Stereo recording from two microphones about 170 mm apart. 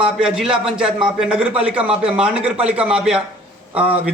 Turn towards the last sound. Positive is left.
turn(degrees=-10)  # may be behind; listen again after turning